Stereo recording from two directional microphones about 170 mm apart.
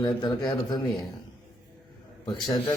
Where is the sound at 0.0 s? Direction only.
25° left (ahead or behind).